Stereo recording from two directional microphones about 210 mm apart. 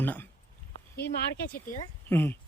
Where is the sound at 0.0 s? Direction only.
10° left (ahead or behind).